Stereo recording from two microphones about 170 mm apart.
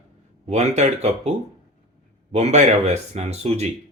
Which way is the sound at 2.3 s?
40° right (ahead or behind).